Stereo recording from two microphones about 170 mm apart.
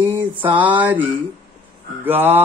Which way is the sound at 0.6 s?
10° right (ahead or behind).